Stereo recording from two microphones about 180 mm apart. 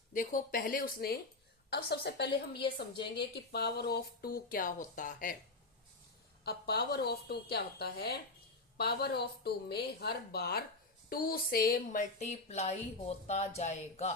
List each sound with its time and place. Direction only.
0.1 s a woman's voice: 50° left (ahead or behind)
6.4 s speech: 65° left (ahead or behind); by 14.2 s 40° left (ahead or behind)